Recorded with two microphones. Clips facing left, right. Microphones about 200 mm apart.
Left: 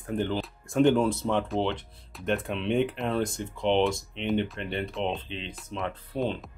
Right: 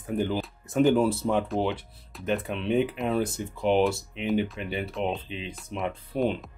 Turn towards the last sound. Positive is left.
turn(degrees=-15)  # may be behind; listen again after turning